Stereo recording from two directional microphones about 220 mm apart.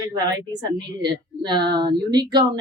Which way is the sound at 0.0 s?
20° right (ahead or behind).